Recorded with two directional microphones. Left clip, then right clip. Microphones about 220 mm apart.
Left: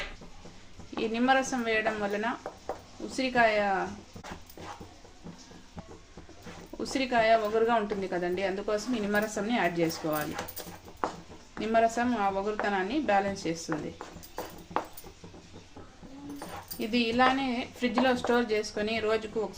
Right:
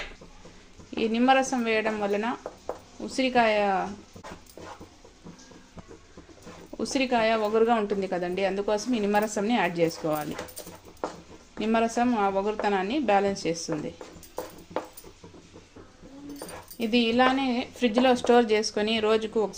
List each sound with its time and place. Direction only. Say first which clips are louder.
0.9 s a woman's voice: right 4 dB; 30° right (ahead or behind)
6.7 s a woman's voice: right 2 dB; 30° right (ahead or behind)
11.6 s a woman's voice: right 1 dB; 30° right (ahead or behind)
16.7 s a woman's voice: right 4 dB; 30° right (ahead or behind)